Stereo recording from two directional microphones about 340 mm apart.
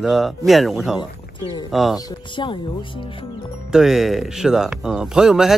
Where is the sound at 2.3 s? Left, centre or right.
Centre.